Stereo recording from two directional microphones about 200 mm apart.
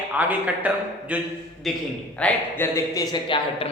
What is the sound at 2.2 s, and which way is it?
Speech, 15° left (ahead or behind).